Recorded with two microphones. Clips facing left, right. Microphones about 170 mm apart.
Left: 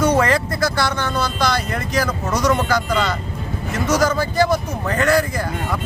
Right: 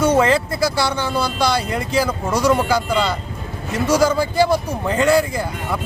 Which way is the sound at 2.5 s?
10° right (ahead or behind).